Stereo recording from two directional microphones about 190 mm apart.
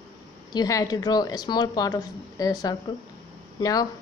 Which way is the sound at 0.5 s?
20° left (ahead or behind).